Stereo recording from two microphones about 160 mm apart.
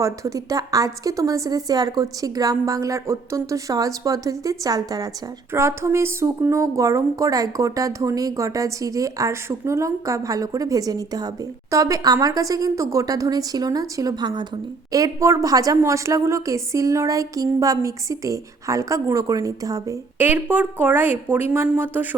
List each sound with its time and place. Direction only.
0.0 s a woman's voice: 20° right (ahead or behind)